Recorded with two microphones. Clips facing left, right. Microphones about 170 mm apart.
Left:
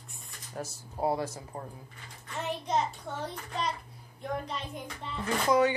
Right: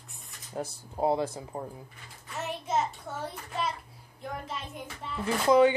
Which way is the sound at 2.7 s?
5° right (ahead or behind).